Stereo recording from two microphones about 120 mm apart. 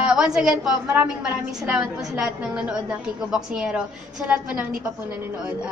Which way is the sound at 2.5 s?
10° right (ahead or behind).